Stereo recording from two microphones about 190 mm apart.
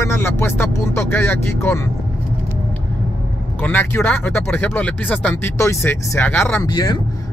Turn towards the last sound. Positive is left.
turn(degrees=20)  # may be behind; listen again after turning